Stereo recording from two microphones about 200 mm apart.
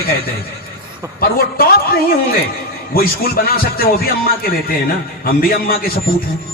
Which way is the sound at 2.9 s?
50° left (ahead or behind).